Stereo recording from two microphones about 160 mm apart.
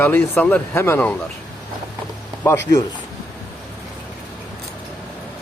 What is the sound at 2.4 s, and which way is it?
Speech, 15° left (ahead or behind).